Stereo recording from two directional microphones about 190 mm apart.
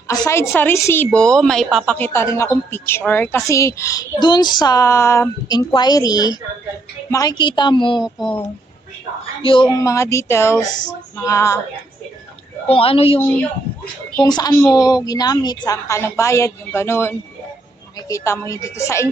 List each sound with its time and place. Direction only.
0.1 s a woman's voice: 15° left (ahead or behind)
8.0 s speech: centre (ahead or behind)
9.4 s a woman's voice: 25° left (ahead or behind)
9.7 s a woman's voice: 15° left (ahead or behind)
12.6 s a woman's voice: 30° left (ahead or behind)
14.3 s a woman's voice: 20° left (ahead or behind)